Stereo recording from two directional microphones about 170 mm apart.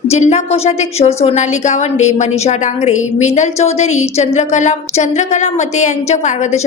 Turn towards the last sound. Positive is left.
turn(degrees=45)  # may be behind; listen again after turning